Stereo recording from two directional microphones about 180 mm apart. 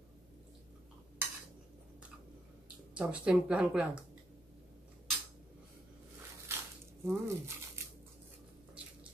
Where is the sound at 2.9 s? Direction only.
5° right (ahead or behind).